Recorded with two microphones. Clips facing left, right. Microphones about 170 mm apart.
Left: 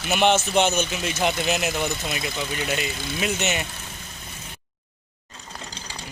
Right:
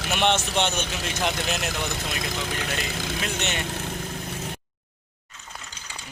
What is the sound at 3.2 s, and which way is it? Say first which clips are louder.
Speech: left 6 dB; 5° left (ahead or behind).